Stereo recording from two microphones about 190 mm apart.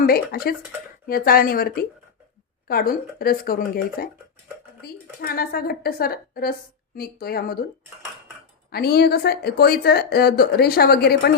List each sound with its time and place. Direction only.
0.0 s a woman's voice: 50° left (ahead or behind)
8.7 s speech: 55° left (ahead or behind)